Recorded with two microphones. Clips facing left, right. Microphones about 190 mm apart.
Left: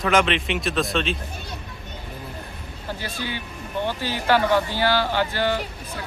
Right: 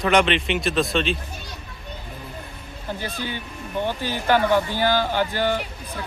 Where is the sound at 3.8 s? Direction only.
15° right (ahead or behind).